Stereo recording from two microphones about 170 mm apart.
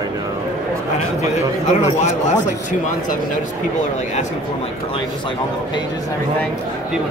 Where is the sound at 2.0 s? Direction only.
45° left (ahead or behind).